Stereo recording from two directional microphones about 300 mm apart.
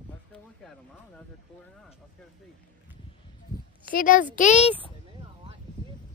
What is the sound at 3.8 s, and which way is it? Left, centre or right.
Speech, left.